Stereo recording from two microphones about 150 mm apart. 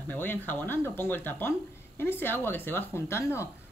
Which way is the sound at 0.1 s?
10° left (ahead or behind).